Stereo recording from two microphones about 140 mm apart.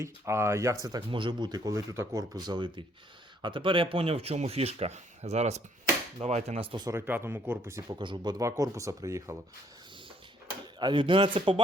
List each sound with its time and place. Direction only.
0.0 s speech: 20° right (ahead or behind); by 6.8 s 40° right (ahead or behind)
6.8 s speech: 15° right (ahead or behind)
7.9 s speech: 35° right (ahead or behind)
10.8 s speech: 35° right (ahead or behind)